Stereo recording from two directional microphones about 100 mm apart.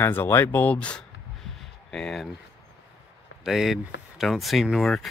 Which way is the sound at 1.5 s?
5° left (ahead or behind).